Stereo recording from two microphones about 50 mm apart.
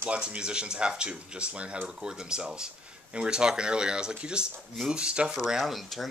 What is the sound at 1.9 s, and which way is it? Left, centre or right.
Speech, centre.